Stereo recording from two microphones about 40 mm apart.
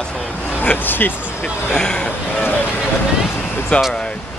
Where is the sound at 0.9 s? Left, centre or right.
Left.